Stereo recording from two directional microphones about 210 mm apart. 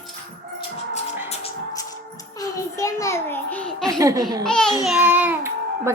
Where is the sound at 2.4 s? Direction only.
15° left (ahead or behind).